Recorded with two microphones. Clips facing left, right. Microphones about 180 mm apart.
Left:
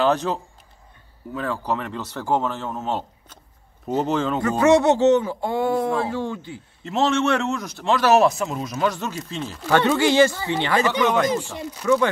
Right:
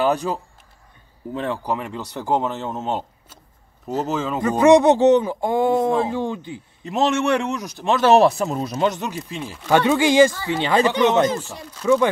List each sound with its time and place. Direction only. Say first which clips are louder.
0.0 s a man's voice: even; 10° right (ahead or behind)
1.3 s speech: right 2 dB; 25° right (ahead or behind)
1.6 s a man's voice: even; 10° right (ahead or behind)
3.8 s speech: left 2 dB; centre (ahead or behind)
4.4 s a man's voice: right 4 dB; 15° right (ahead or behind)
10.3 s speech: right 1 dB; 20° left (ahead or behind)
10.9 s speech: right 3 dB; 25° right (ahead or behind)
11.3 s speech: left 4 dB; 15° left (ahead or behind)
11.8 s a man's voice: right 2 dB; 15° right (ahead or behind)